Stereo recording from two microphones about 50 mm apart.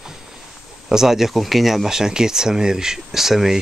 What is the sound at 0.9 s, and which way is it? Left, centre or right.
Speech, centre.